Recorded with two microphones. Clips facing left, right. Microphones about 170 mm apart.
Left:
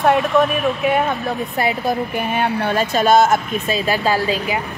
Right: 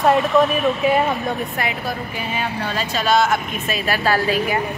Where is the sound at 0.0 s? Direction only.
Centre (ahead or behind).